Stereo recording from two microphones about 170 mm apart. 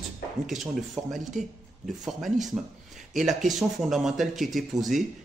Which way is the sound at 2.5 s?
5° right (ahead or behind).